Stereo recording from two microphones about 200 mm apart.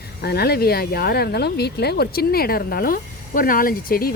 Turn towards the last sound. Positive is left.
turn(degrees=45)  # may be behind; listen again after turning